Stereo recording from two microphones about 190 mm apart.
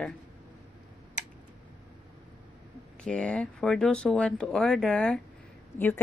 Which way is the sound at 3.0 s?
5° left (ahead or behind).